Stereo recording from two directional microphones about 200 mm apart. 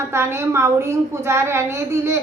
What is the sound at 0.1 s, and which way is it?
A woman's voice, 15° right (ahead or behind).